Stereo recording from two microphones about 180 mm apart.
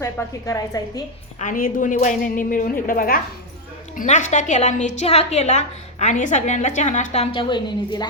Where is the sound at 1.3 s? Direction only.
50° left (ahead or behind).